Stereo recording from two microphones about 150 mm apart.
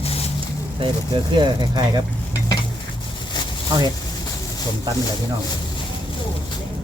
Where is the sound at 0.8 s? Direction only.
30° right (ahead or behind).